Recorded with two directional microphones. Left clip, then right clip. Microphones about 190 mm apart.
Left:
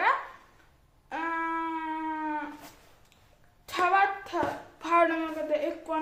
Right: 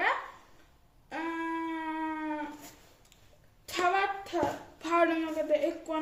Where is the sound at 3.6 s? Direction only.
10° right (ahead or behind).